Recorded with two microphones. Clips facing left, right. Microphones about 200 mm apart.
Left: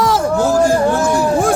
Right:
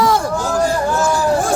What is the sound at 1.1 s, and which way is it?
Speech, 60° left (ahead or behind).